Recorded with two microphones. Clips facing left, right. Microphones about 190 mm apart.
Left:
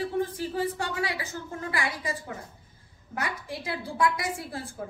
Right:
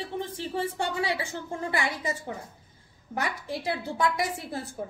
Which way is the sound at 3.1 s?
25° right (ahead or behind).